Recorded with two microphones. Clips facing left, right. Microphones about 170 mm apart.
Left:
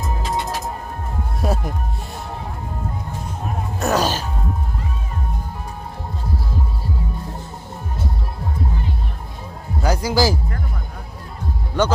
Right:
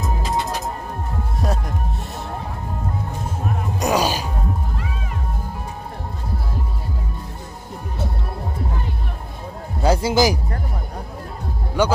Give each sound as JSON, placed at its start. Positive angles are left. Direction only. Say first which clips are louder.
{"t": 1.4, "sound": "music", "louder": "left 2 dB", "side_deg": 0}
{"t": 3.8, "sound": "music", "louder": "even", "side_deg": -10}
{"t": 9.8, "sound": "music", "louder": "right 2 dB", "side_deg": -25}
{"t": 11.8, "sound": "speech", "louder": "even", "side_deg": -10}